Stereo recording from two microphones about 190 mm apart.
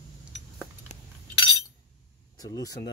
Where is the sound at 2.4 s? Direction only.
20° left (ahead or behind).